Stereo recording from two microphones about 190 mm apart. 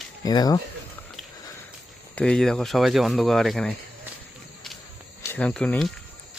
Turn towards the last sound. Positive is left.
turn(degrees=5)  # may be behind; listen again after turning